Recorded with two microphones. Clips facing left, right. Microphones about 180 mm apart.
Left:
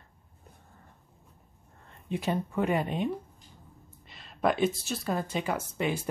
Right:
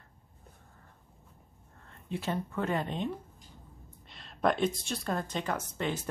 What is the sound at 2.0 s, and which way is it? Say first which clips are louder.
Speech: left 4 dB; 15° left (ahead or behind).